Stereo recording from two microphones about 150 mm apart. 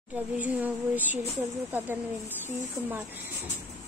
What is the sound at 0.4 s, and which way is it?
Speech, 10° right (ahead or behind).